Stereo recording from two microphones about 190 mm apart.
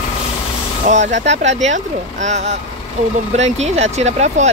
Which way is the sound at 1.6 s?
40° right (ahead or behind).